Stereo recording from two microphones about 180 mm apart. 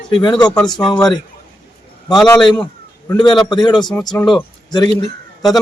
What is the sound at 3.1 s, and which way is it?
Speech, 25° left (ahead or behind).